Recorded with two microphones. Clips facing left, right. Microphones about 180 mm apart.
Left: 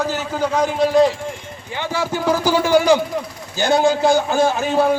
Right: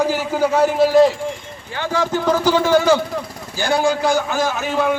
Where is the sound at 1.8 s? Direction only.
10° left (ahead or behind).